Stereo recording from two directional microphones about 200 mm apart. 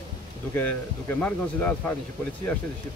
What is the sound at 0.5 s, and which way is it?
Speech, 10° left (ahead or behind).